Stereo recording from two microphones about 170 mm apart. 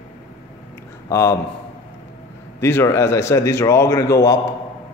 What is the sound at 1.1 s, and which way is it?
Speech, 15° left (ahead or behind).